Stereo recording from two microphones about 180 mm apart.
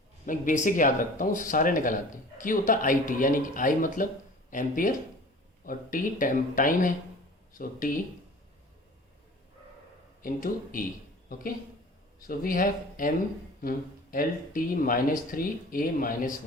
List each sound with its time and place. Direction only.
0.3 s speech: 45° left (ahead or behind)
10.2 s speech: 50° left (ahead or behind)